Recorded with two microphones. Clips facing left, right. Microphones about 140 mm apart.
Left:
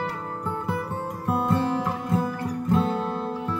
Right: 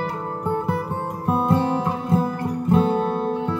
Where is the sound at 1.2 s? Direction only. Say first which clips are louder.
Right 4 dB; 25° right (ahead or behind).